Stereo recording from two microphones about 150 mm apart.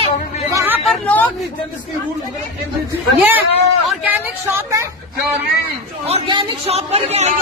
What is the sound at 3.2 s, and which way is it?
Speech, 10° right (ahead or behind).